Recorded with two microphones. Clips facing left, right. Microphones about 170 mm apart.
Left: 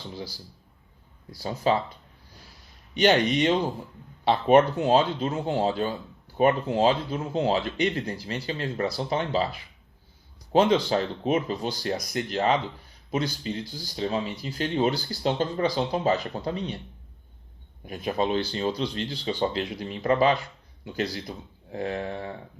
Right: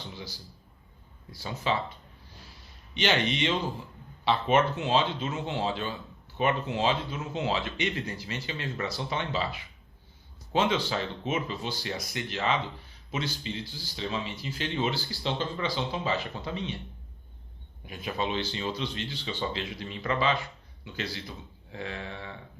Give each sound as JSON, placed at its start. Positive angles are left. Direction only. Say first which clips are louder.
{"t": 1.4, "sound": "speech", "louder": "left 6 dB", "side_deg": 40}
{"t": 2.9, "sound": "speech", "louder": "left 7 dB", "side_deg": 40}
{"t": 17.8, "sound": "speech", "louder": "left 6 dB", "side_deg": 40}